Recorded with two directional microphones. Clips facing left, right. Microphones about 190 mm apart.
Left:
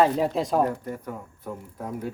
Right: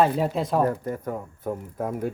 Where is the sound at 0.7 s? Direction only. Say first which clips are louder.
Right 4 dB; 45° right (ahead or behind).